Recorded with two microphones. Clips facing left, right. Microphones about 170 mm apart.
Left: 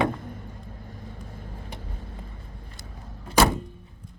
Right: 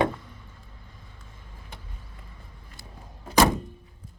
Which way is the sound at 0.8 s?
50° left (ahead or behind).